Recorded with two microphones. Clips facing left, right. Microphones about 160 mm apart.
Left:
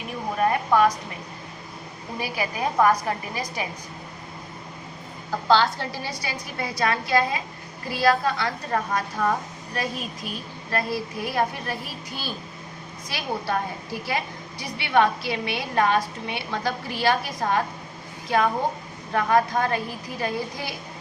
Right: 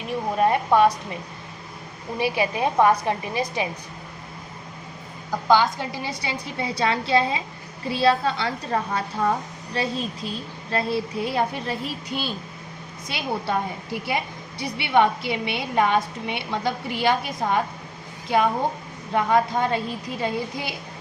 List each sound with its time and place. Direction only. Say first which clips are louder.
0.3 s speech: right 2 dB; 25° right (ahead or behind)
2.1 s a woman's voice: right 5 dB; 25° right (ahead or behind)
5.5 s a woman's voice: right 1 dB; 15° right (ahead or behind)
19.1 s a woman's voice: right 1 dB; 20° right (ahead or behind)